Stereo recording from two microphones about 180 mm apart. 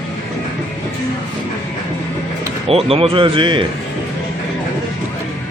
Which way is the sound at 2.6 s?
30° right (ahead or behind).